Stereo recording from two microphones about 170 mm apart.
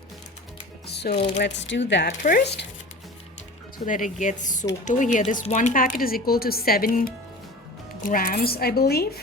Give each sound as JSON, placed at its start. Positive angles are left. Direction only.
{"t": 0.9, "sound": "music", "side_deg": 75}
{"t": 1.1, "sound": "speech", "side_deg": 40}
{"t": 1.4, "sound": "speech", "side_deg": 90}
{"t": 2.2, "sound": "a woman's voice", "side_deg": 55}
{"t": 3.8, "sound": "a woman's voice", "side_deg": 50}